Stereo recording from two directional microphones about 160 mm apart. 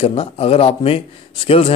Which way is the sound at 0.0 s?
35° left (ahead or behind).